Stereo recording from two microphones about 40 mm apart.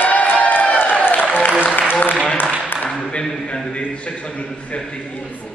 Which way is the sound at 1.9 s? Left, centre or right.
Left.